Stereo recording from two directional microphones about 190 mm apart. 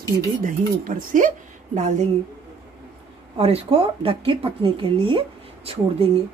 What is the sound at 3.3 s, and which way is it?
Speech, 30° right (ahead or behind).